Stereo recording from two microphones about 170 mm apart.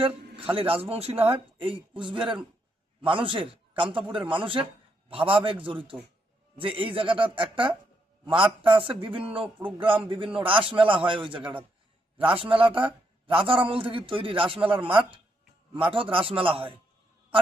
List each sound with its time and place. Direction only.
0.5 s a man's voice: 35° right (ahead or behind)
9.6 s a man's voice: 10° right (ahead or behind)
10.1 s a man's voice: 30° right (ahead or behind)